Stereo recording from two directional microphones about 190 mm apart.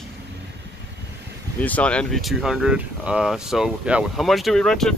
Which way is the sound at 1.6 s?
5° left (ahead or behind).